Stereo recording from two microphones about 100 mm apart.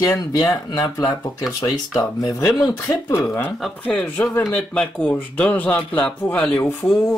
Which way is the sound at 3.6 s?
10° left (ahead or behind).